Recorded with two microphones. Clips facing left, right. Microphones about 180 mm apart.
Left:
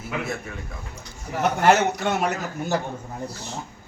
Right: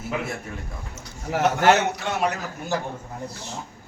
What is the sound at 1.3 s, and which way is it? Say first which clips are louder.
Speech: right 1 dB; 80° right.